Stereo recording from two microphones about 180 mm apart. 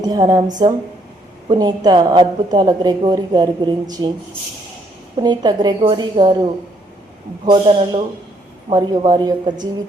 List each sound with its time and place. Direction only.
0.0 s a woman's voice: 25° right (ahead or behind)
5.1 s a woman's voice: 25° right (ahead or behind)